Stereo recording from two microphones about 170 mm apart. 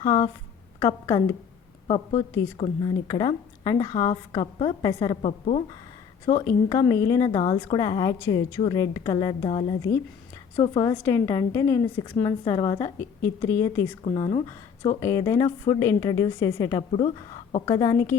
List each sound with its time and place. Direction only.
0.0 s a woman's voice: 25° left (ahead or behind)
6.2 s a woman's voice: 25° left (ahead or behind)
14.0 s a woman's voice: 30° left (ahead or behind)